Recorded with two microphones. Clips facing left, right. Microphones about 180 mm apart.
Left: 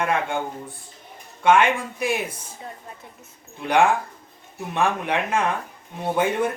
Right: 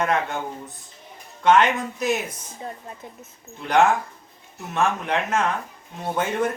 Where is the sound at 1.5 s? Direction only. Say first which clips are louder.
Even; 10° left (ahead or behind).